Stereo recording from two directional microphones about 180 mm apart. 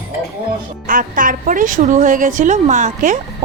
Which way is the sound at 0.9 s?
50° right (ahead or behind).